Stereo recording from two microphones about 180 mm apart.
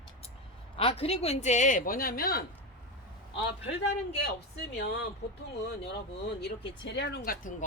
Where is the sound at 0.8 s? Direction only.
35° left (ahead or behind); by 2.4 s 55° left (ahead or behind).